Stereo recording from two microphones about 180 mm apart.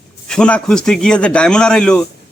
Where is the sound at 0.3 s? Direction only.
5° left (ahead or behind).